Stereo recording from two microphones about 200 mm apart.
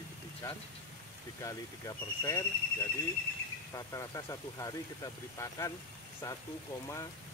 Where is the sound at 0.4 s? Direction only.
15° left (ahead or behind).